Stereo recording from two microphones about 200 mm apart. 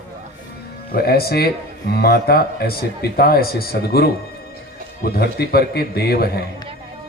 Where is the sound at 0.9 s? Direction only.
50° left (ahead or behind).